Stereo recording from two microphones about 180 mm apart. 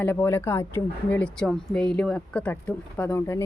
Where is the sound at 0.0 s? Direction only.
10° left (ahead or behind).